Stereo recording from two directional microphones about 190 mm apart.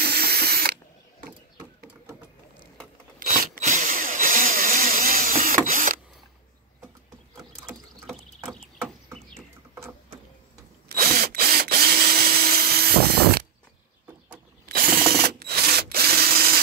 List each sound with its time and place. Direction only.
0.0 s ratchet: 55° right (ahead or behind)
3.2 s a sound: 45° right (ahead or behind)
10.9 s drill: 50° right (ahead or behind)
14.7 s ratchet: 50° right (ahead or behind)